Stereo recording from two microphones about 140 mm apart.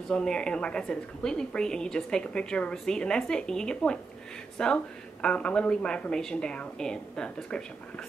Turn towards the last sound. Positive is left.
turn(degrees=5)  # may be behind; listen again after turning